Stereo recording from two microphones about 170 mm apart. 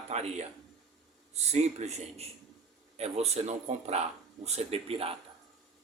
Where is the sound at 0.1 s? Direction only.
40° right (ahead or behind).